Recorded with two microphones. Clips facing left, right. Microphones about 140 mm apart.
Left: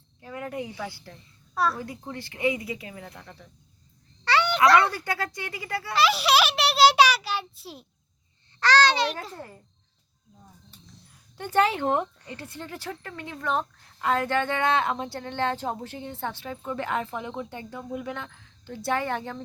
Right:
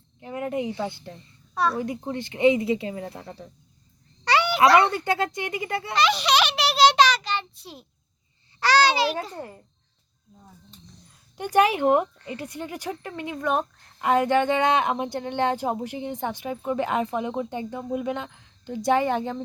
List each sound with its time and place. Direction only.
0.2 s cricket: 20° right (ahead or behind)
0.8 s speech: 20° right (ahead or behind)
1.3 s a sound: centre (ahead or behind)
1.8 s speech: 20° right (ahead or behind)
4.3 s a sound: 10° right (ahead or behind)
4.9 s speech: 25° right (ahead or behind)
5.9 s a sound: 5° left (ahead or behind)
8.6 s a child's voice: 10° right (ahead or behind)
11.3 s speech: 15° right (ahead or behind)